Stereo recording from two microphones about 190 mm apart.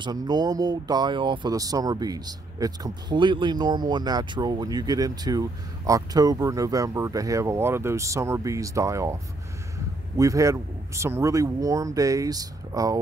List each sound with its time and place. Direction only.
0.0 s speech: 20° right (ahead or behind)